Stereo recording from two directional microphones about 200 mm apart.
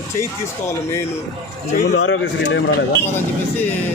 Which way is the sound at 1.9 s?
80° left.